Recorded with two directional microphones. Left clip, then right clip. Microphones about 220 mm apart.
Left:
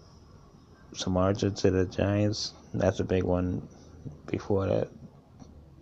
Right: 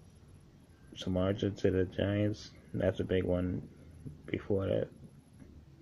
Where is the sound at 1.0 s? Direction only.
10° left (ahead or behind).